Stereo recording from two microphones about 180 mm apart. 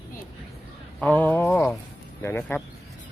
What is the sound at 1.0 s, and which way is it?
Speech, 10° left (ahead or behind).